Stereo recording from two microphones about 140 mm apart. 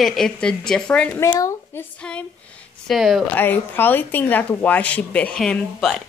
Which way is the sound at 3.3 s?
15° left (ahead or behind).